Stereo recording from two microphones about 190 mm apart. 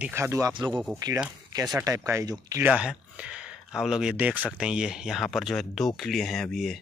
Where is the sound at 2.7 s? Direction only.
5° right (ahead or behind).